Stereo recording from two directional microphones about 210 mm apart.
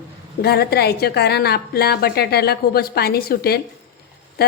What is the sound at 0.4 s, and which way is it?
Speech, 50° left (ahead or behind).